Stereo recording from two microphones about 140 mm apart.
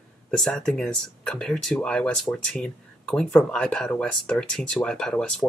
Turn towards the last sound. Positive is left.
turn(degrees=5)  # may be behind; listen again after turning